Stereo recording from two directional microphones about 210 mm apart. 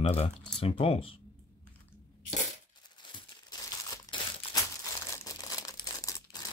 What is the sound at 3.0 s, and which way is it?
Crumpling, 20° left (ahead or behind).